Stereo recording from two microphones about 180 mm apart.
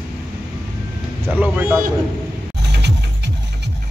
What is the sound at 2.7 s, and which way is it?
Music, 70° right (ahead or behind).